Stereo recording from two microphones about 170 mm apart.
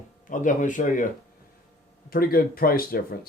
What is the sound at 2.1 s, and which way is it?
Speech, 60° left (ahead or behind).